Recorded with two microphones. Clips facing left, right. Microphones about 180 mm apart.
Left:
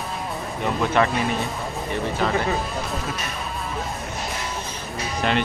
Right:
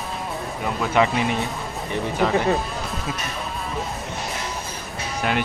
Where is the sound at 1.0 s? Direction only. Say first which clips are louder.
Right 2 dB; 15° right (ahead or behind).